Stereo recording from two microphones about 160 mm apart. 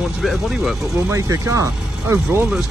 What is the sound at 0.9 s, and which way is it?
Speech, 20° right (ahead or behind).